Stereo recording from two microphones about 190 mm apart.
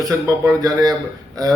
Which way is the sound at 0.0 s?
20° right (ahead or behind).